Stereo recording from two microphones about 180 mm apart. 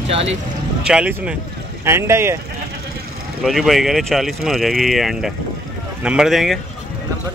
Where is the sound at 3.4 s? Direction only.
Centre (ahead or behind).